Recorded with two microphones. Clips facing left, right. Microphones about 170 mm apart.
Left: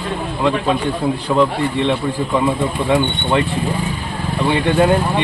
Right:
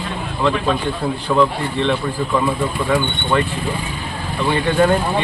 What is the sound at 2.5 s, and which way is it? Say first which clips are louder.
Speech: left 2 dB; 20° left (ahead or behind).